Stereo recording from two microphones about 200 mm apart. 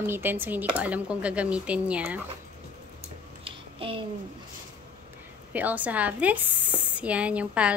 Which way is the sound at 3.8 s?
25° right (ahead or behind).